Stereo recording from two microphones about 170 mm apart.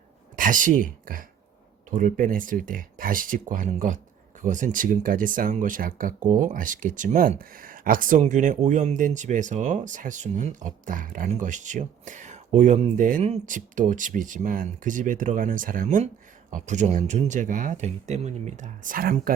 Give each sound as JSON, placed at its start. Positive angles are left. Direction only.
{"t": 0.3, "sound": "speech", "side_deg": -50}